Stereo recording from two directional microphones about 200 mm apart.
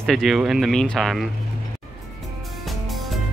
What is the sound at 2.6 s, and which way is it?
Music, centre (ahead or behind).